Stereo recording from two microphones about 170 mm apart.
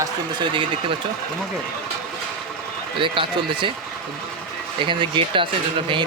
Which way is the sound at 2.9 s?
30° right (ahead or behind).